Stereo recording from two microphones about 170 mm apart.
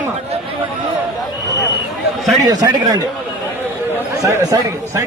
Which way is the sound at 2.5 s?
25° right (ahead or behind).